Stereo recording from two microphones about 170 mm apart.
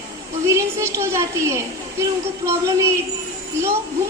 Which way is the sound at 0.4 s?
15° right (ahead or behind).